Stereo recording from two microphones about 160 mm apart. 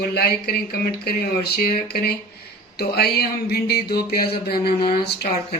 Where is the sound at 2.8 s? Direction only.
85° left; by 5.1 s 70° left (ahead or behind).